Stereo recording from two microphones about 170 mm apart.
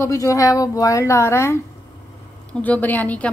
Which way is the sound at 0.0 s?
20° left (ahead or behind).